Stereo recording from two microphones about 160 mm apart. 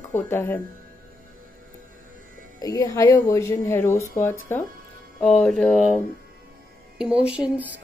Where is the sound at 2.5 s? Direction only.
20° left (ahead or behind); by 5.8 s centre (ahead or behind).